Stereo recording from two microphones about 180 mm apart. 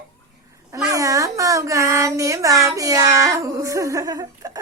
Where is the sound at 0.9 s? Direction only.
20° right (ahead or behind).